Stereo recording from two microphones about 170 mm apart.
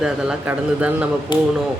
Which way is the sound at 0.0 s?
5° right (ahead or behind).